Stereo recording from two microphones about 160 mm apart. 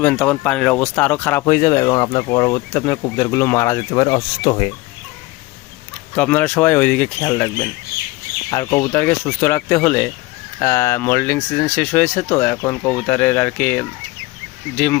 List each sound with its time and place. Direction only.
0.0 s speech: 10° left (ahead or behind); by 4.7 s 30° left (ahead or behind)
6.1 s speech: 10° left (ahead or behind)